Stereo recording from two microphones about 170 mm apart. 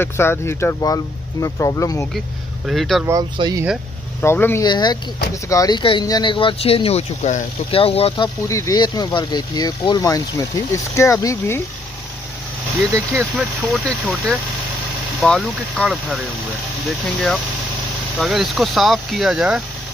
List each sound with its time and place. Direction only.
0.0 s speech: 15° left (ahead or behind)
2.1 s speech: centre (ahead or behind)
3.1 s speech: 25° right (ahead or behind)
4.2 s speech: 15° left (ahead or behind)
4.6 s speech: 25° left (ahead or behind)
8.5 s speech: 20° left (ahead or behind)
13.4 s speech: centre (ahead or behind)